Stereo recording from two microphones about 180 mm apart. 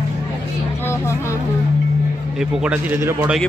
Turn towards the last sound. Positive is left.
turn(degrees=-15)  # may be behind; listen again after turning